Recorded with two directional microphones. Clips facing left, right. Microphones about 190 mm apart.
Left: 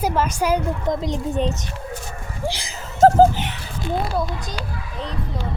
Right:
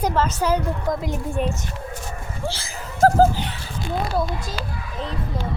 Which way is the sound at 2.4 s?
15° left (ahead or behind).